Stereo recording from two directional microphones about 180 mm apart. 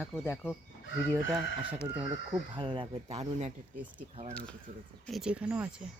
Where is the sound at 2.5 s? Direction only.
25° right (ahead or behind).